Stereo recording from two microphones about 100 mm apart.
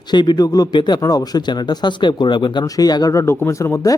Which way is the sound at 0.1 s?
45° left (ahead or behind).